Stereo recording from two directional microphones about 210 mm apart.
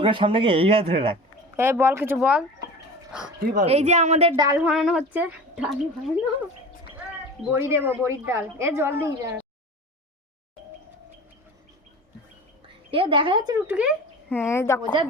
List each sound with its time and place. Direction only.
0.0 s speech: 25° right (ahead or behind)
1.5 s a woman's voice: 10° right (ahead or behind)
3.1 s dog: 5° right (ahead or behind)
3.4 s a woman's voice: 40° right (ahead or behind)
4.4 s a woman's voice: 10° right (ahead or behind)
7.5 s a woman's voice: 10° right (ahead or behind)
12.6 s a woman's voice: 25° right (ahead or behind)
13.7 s speech: 5° right (ahead or behind)
14.3 s a woman's voice: 10° left (ahead or behind)